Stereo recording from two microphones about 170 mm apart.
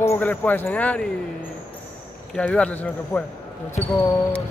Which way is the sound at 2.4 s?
5° left (ahead or behind).